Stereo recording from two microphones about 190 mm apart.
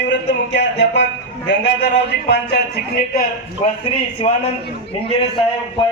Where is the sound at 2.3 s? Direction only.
55° left (ahead or behind).